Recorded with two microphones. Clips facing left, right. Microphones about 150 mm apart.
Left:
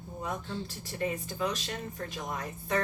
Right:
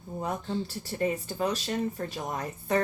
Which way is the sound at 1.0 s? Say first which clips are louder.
Right 3 dB; 40° right (ahead or behind).